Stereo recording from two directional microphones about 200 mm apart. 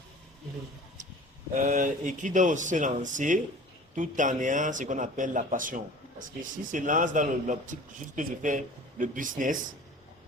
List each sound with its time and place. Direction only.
1.5 s a man's voice: 40° right (ahead or behind)